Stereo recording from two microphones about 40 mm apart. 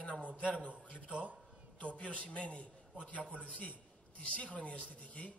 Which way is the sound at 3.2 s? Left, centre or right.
Right.